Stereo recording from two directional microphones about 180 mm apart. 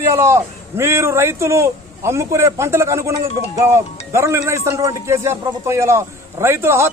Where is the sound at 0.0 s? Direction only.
15° right (ahead or behind).